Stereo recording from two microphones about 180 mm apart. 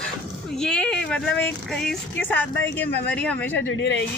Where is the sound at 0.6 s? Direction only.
5° left (ahead or behind).